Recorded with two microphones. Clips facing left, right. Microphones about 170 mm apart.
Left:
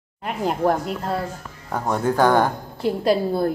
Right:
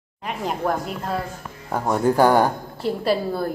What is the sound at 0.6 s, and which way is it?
Speech, 30° left (ahead or behind).